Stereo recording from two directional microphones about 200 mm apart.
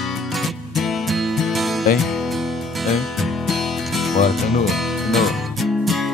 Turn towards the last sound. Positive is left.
turn(degrees=0)  # may be behind; listen again after turning